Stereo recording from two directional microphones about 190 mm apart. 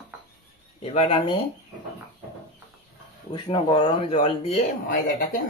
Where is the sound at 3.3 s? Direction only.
25° left (ahead or behind).